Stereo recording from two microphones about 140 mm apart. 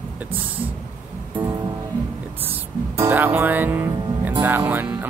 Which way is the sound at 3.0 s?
15° right (ahead or behind).